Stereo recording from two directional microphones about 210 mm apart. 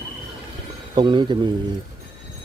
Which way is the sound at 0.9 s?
20° right (ahead or behind).